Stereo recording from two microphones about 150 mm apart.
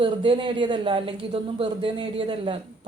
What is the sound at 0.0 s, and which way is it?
A woman's voice, 35° right (ahead or behind).